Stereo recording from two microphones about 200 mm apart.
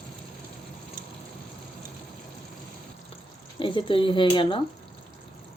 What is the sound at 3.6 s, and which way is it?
Speech, 25° left (ahead or behind).